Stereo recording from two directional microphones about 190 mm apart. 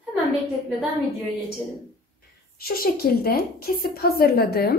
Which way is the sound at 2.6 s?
55° left (ahead or behind).